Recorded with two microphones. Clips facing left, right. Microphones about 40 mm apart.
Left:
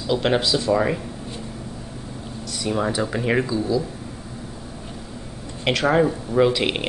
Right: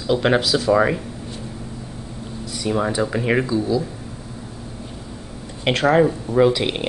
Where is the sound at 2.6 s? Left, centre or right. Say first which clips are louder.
Right 2 dB; centre.